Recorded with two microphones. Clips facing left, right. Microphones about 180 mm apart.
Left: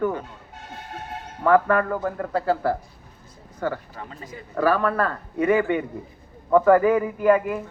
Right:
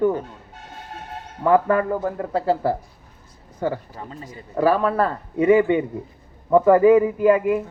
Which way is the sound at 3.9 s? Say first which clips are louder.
Right 2 dB; 30° right (ahead or behind).